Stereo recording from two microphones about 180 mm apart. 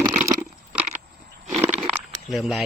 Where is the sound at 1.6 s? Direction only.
10° right (ahead or behind).